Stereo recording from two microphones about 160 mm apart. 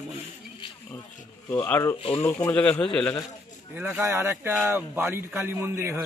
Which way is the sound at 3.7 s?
10° right (ahead or behind).